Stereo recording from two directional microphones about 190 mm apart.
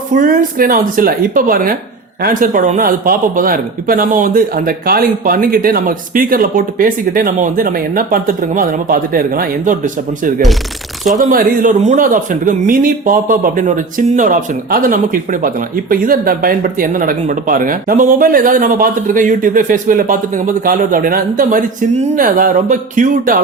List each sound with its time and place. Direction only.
0.2 s a man's voice: 45° right (ahead or behind)